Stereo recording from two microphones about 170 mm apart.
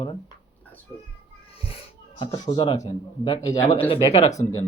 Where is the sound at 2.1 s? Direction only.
30° left (ahead or behind).